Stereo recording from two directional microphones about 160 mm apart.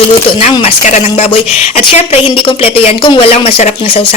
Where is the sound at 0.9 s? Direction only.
45° left (ahead or behind).